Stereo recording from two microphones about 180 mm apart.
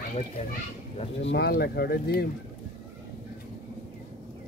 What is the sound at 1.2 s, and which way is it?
Speech, 70° left (ahead or behind).